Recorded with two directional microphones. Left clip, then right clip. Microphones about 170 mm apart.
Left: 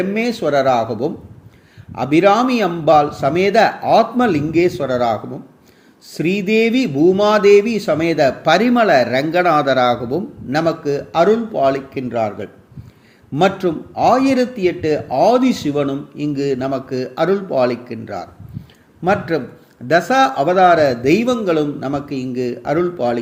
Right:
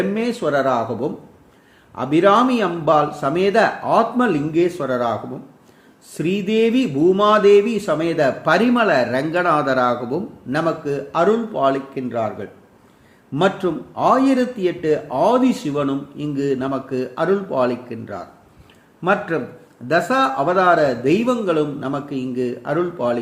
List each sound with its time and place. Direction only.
0.1 s speech: 15° left (ahead or behind)
6.1 s speech: 15° left (ahead or behind)
19.9 s speech: 20° left (ahead or behind)